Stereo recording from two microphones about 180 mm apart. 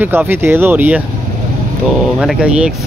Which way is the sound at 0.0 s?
10° right (ahead or behind).